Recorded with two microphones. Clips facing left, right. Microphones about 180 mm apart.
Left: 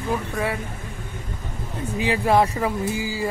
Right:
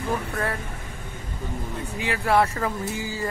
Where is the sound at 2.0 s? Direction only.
20° left (ahead or behind).